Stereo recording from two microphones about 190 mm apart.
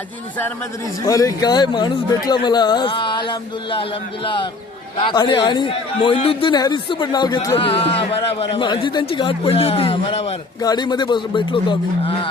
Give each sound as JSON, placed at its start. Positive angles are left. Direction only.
{"t": 1.0, "sound": "speech", "side_deg": 20}
{"t": 4.9, "sound": "speech", "side_deg": 25}